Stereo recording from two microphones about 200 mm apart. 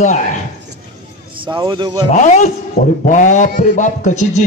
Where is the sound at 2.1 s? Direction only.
35° left (ahead or behind).